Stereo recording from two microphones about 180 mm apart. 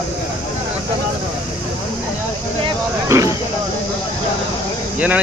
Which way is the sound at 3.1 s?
15° right (ahead or behind).